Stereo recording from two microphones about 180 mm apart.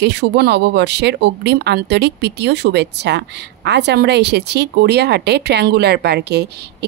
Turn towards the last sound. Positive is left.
turn(degrees=-65)  # may be behind; listen again after turning